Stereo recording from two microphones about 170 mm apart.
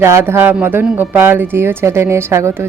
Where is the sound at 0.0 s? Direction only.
15° right (ahead or behind).